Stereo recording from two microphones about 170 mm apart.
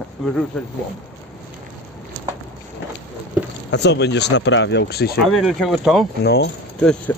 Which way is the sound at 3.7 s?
90° left.